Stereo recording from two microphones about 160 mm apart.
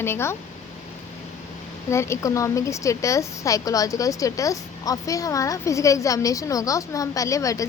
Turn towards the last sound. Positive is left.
turn(degrees=20)  # may be behind; listen again after turning